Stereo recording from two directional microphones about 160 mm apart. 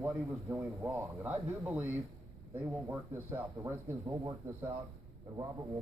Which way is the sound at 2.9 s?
10° right (ahead or behind).